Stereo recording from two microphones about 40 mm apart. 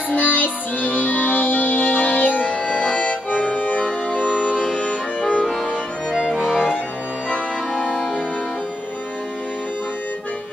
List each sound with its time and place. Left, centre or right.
0.1 s music: left
4.3 s music: right
4.6 s accordion: left
6.3 s music: centre
7.8 s music: centre